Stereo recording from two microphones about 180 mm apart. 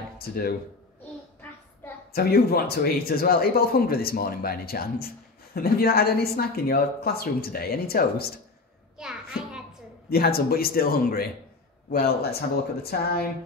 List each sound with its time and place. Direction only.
0.2 s speech: 55° left (ahead or behind)
2.1 s speech: 60° left (ahead or behind)
8.9 s a sound: 5° right (ahead or behind)
10.0 s speech: 60° left (ahead or behind)